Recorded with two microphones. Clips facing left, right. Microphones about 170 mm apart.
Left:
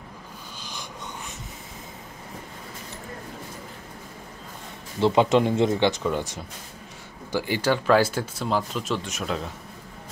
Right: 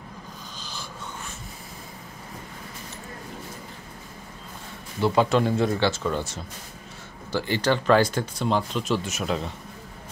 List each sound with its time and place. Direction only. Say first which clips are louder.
5.0 s speech: left 2 dB; 20° left (ahead or behind); by 9.5 s centre (ahead or behind)